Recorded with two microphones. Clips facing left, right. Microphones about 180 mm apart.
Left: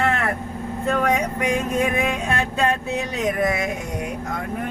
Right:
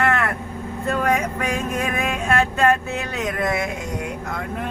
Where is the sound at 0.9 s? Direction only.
20° left (ahead or behind).